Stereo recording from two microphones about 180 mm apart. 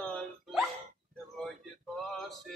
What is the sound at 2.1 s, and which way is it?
Music, centre (ahead or behind).